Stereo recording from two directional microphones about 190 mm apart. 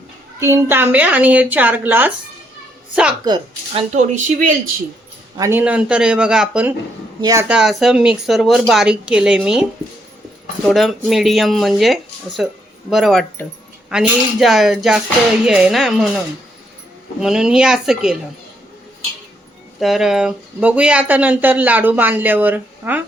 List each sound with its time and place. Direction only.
0.3 s a woman's voice: 15° right (ahead or behind)
3.2 s speech: 25° right (ahead or behind)
3.9 s speech: 40° right (ahead or behind)
5.4 s speech: 10° right (ahead or behind)
7.2 s speech: 20° right (ahead or behind)
7.4 s speech: 5° right (ahead or behind)
10.7 s speech: centre (ahead or behind)
17.2 s speech: 5° right (ahead or behind)
19.8 s speech: centre (ahead or behind)